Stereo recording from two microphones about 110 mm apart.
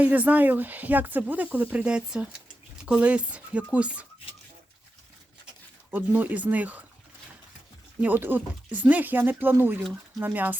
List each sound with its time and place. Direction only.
0.0 s speech: 15° right (ahead or behind)
5.9 s speech: 15° right (ahead or behind)
8.0 s speech: 15° right (ahead or behind)